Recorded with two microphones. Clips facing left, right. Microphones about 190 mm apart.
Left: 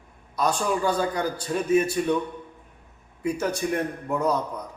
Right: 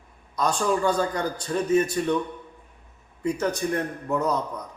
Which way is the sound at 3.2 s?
10° left (ahead or behind).